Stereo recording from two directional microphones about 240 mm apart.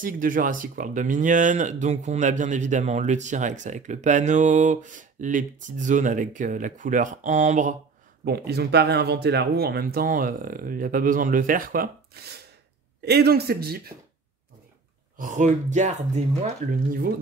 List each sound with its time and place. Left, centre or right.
0.0 s speech: right
8.3 s speech: right
15.1 s speech: right